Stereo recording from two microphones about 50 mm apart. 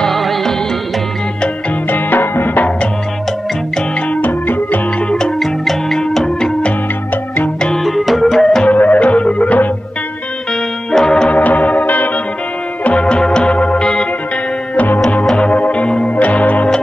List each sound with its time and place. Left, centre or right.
0.0 s music: centre
1.9 s music: left
4.1 s music: left
5.1 s music: centre
7.8 s music: centre
8.6 s music: left
10.9 s music: centre
11.2 s music: left
12.8 s music: left
15.3 s music: left